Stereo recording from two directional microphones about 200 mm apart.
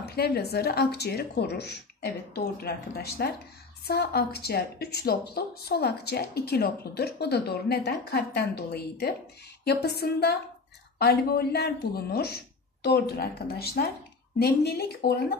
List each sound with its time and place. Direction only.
0.0 s a woman's voice: 50° left (ahead or behind)